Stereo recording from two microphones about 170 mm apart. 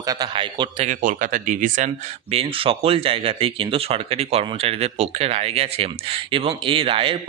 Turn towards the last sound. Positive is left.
turn(degrees=-30)  # may be behind; listen again after turning